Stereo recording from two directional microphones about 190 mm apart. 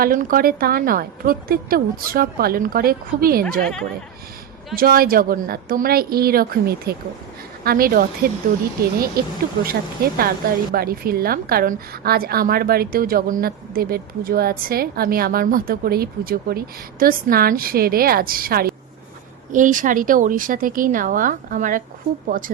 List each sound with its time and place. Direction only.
0.0 s a woman's voice: 45° right (ahead or behind)
4.7 s a woman's voice: 50° right (ahead or behind)